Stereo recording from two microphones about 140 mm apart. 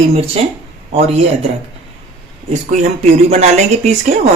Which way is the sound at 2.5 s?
50° right (ahead or behind).